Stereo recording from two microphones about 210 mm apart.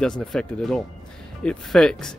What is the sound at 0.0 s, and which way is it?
Speech, centre (ahead or behind).